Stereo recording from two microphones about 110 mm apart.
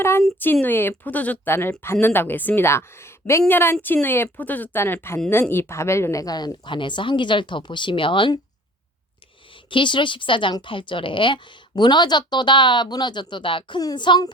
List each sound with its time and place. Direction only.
0.0 s a woman's voice: 20° left (ahead or behind); by 8.4 s 50° left (ahead or behind)
9.6 s speech: 50° left (ahead or behind)